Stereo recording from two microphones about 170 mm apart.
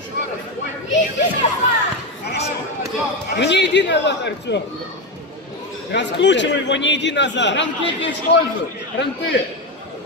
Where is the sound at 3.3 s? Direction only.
90° left.